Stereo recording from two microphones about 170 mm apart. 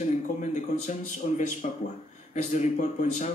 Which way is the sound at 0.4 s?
45° left (ahead or behind).